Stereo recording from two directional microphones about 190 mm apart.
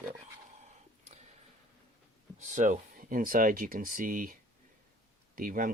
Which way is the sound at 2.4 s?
40° right (ahead or behind).